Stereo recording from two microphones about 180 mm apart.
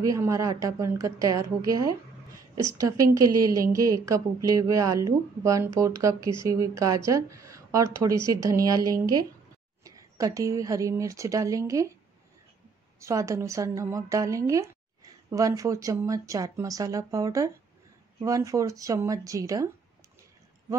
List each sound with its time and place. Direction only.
0.0 s speech: 20° right (ahead or behind)
13.0 s speech: 15° right (ahead or behind)